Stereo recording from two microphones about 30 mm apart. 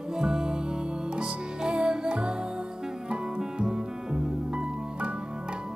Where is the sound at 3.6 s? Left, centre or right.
Right.